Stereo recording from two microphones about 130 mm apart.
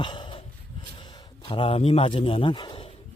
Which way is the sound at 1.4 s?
40° left (ahead or behind).